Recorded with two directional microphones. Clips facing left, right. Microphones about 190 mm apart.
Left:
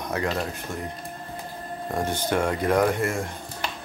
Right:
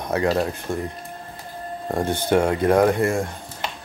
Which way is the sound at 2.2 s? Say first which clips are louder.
Right 6 dB; 30° right (ahead or behind).